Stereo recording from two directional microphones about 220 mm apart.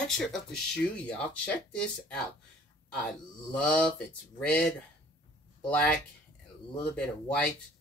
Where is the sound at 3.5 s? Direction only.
5° left (ahead or behind).